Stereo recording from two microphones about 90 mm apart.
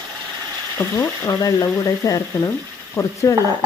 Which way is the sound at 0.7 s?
35° left (ahead or behind).